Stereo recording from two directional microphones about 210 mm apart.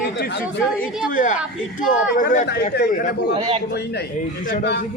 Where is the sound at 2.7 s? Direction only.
50° left (ahead or behind).